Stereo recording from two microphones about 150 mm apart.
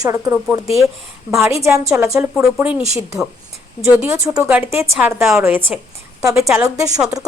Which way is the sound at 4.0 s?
20° right (ahead or behind).